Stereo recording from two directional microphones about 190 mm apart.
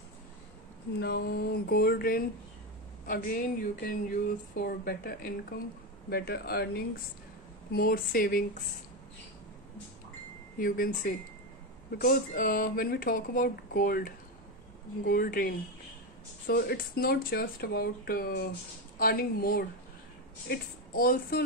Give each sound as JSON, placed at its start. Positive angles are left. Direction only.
{"t": 0.9, "sound": "speech", "side_deg": 55}
{"t": 10.6, "sound": "speech", "side_deg": 50}